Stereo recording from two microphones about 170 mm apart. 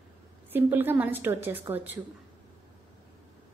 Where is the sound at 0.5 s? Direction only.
10° right (ahead or behind).